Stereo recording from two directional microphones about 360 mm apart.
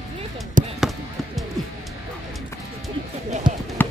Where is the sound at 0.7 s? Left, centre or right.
Centre.